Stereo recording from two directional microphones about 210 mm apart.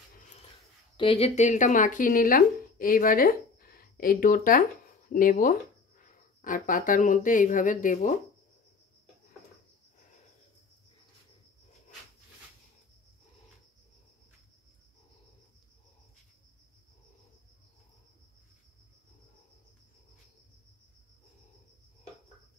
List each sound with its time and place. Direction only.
0.9 s speech: 25° left (ahead or behind)